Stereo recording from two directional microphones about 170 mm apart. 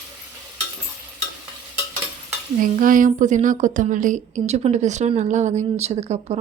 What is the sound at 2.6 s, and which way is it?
A woman's voice, 50° right (ahead or behind).